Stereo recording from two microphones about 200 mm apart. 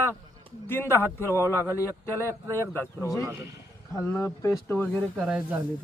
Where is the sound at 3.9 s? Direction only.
15° left (ahead or behind).